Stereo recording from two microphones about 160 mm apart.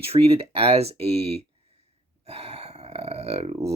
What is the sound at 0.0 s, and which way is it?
Speech, 40° right (ahead or behind).